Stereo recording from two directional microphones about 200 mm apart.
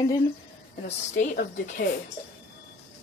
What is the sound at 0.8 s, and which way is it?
A woman's voice, 40° left (ahead or behind).